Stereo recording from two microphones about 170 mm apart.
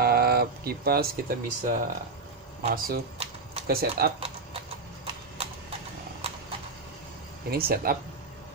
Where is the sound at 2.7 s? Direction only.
60° right (ahead or behind).